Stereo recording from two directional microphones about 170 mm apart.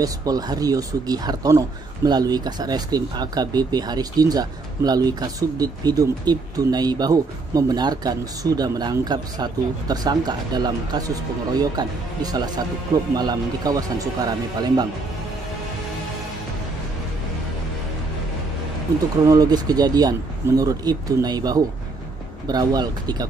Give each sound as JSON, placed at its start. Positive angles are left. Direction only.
{"t": 0.0, "sound": "speech", "side_deg": -20}
{"t": 19.2, "sound": "speech", "side_deg": -20}